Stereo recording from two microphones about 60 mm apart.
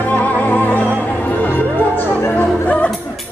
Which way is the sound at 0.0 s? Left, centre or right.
Left.